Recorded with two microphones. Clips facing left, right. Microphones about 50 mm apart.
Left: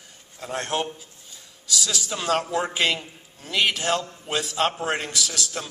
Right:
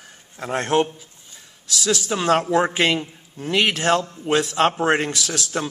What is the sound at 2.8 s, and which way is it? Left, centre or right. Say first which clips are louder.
A man's voice: right 4 dB; right.